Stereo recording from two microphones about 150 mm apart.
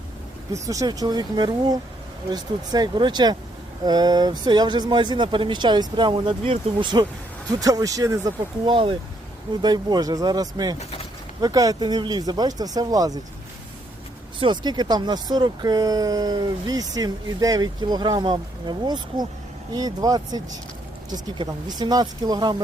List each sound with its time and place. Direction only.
0.5 s speech: 20° right (ahead or behind)
14.3 s speech: 30° right (ahead or behind)